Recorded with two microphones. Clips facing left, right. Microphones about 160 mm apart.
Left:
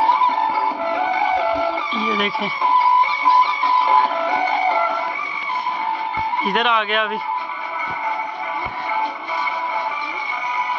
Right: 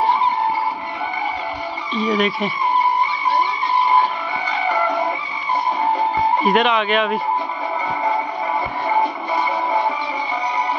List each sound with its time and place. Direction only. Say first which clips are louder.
0.1 s music: even; 85° left
2.0 s a man's voice: right 6 dB; centre (ahead or behind)
2.6 s music: left 3 dB; 90° left
6.4 s a man's voice: even; centre (ahead or behind)